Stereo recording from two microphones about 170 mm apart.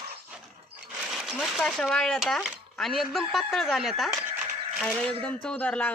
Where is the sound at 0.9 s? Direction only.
5° right (ahead or behind).